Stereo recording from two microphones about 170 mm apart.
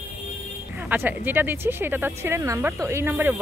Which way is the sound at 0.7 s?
10° right (ahead or behind).